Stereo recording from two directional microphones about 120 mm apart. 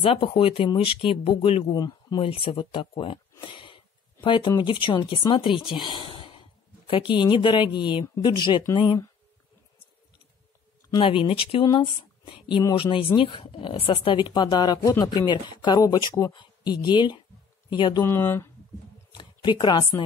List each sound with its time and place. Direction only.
0.0 s a woman's voice: 50° left (ahead or behind)
1.7 s speech: 35° left (ahead or behind)
2.2 s a woman's voice: 50° left (ahead or behind)
11.0 s a woman's voice: 45° left (ahead or behind)
18.0 s speech: 20° left (ahead or behind)
19.1 s a sound: 40° left (ahead or behind)